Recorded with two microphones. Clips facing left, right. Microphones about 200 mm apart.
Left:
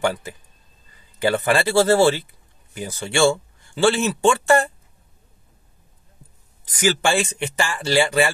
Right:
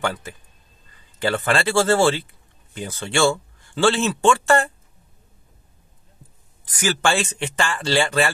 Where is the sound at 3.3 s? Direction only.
10° left (ahead or behind).